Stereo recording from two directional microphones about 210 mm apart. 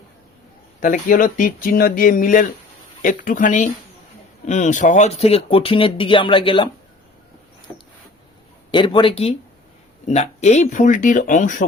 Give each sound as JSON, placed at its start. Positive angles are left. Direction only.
{"t": 0.8, "sound": "speech", "side_deg": 40}
{"t": 8.7, "sound": "speech", "side_deg": 25}